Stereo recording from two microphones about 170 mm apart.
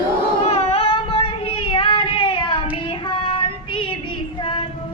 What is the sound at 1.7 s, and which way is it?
Child singing, 30° left (ahead or behind).